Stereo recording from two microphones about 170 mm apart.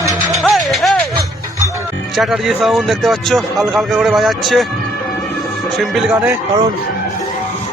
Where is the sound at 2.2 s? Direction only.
Centre (ahead or behind).